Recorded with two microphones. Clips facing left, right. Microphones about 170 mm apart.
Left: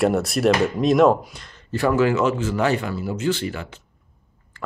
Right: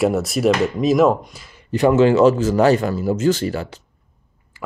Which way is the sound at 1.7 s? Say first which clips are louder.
Right 5 dB; 20° right (ahead or behind).